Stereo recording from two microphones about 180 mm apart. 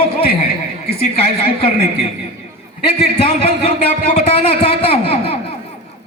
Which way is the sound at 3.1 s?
35° left (ahead or behind).